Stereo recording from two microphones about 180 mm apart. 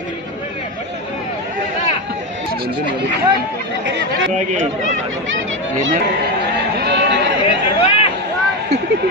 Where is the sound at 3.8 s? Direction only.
80° right.